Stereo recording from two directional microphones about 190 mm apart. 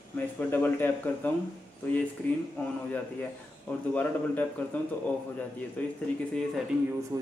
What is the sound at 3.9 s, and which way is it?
Speech, 10° left (ahead or behind).